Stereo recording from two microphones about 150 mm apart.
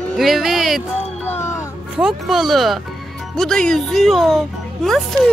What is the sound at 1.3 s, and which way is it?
Music, 15° left (ahead or behind).